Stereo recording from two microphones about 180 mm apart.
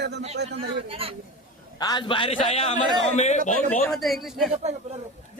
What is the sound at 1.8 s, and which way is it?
A man's voice, 25° left (ahead or behind).